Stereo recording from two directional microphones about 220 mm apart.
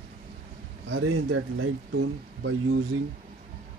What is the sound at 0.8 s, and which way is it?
Speech, 70° right (ahead or behind).